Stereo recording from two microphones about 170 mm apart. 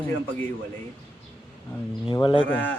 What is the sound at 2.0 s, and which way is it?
Speech, 30° left (ahead or behind).